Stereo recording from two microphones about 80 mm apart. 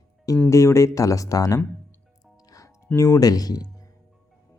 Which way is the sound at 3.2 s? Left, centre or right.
Left.